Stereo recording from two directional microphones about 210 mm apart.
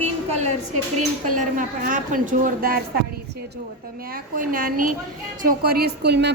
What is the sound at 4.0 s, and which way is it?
A woman's voice, 45° right (ahead or behind).